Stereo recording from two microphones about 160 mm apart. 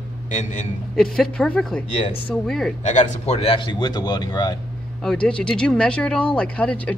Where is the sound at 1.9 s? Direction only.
40° left (ahead or behind).